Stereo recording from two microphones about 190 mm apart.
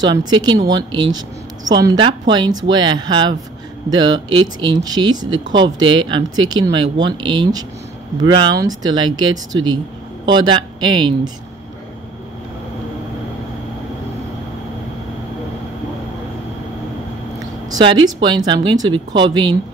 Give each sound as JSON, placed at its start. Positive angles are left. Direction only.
{"t": 0.0, "sound": "speech", "side_deg": -20}
{"t": 17.6, "sound": "speech", "side_deg": -25}